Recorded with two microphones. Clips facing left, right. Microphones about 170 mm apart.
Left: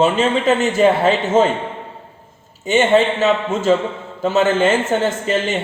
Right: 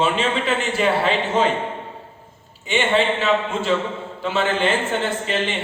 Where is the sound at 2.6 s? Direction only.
40° left (ahead or behind).